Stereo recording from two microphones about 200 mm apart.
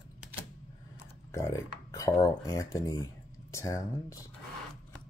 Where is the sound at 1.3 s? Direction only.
15° left (ahead or behind).